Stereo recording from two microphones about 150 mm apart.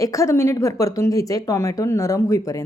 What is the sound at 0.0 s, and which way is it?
A woman's voice, 20° left (ahead or behind).